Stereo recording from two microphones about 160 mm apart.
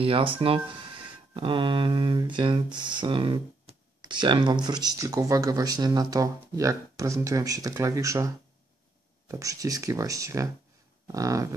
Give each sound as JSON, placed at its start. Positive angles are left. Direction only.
{"t": 0.0, "sound": "speech", "side_deg": -35}
{"t": 9.3, "sound": "speech", "side_deg": -20}